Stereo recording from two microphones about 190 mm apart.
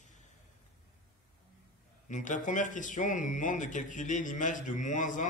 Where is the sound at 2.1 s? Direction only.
40° left (ahead or behind).